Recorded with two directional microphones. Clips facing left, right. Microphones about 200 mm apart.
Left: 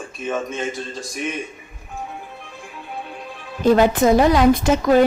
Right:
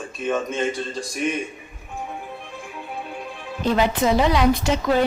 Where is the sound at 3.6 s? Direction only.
45° left (ahead or behind).